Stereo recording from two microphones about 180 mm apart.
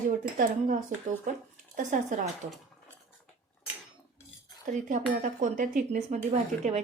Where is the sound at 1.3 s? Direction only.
50° right (ahead or behind).